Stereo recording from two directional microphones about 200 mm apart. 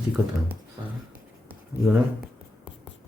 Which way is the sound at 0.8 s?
20° right (ahead or behind).